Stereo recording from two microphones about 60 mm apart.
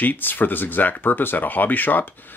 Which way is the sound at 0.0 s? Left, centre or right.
Left.